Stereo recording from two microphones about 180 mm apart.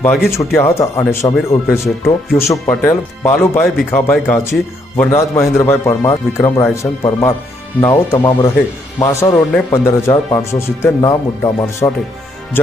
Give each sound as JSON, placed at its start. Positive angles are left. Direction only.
{"t": 0.3, "sound": "speech", "side_deg": 15}